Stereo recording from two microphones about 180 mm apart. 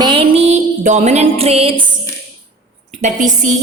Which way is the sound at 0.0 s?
30° right (ahead or behind).